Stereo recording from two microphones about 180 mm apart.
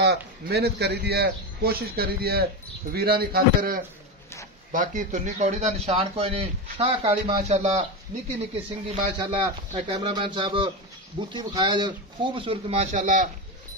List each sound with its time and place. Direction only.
0.5 s a man's voice: 60° right (ahead or behind); by 7.8 s 40° right (ahead or behind)
8.8 s speech: 35° right (ahead or behind)